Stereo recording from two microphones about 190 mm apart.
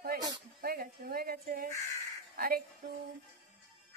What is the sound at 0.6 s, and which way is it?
Speech, 50° right (ahead or behind).